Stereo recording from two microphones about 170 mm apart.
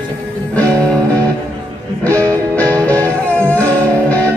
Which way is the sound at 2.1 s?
20° right (ahead or behind).